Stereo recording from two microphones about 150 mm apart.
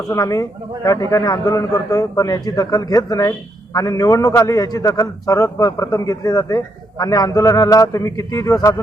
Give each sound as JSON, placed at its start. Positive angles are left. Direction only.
{"t": 0.1, "sound": "a man's voice", "side_deg": 20}